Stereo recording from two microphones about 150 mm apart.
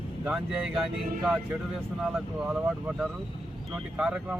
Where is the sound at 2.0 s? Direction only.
5° right (ahead or behind).